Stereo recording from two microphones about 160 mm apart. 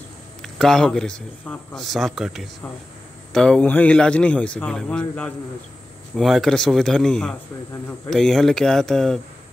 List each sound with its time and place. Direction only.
0.4 s a man's voice: centre (ahead or behind)